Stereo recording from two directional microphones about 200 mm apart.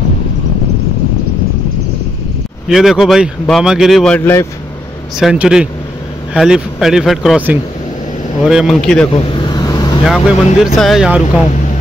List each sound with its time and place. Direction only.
2.7 s speech: centre (ahead or behind)
5.2 s speech: 5° right (ahead or behind)
9.1 s vehicle: 25° left (ahead or behind)
10.0 s speech: centre (ahead or behind)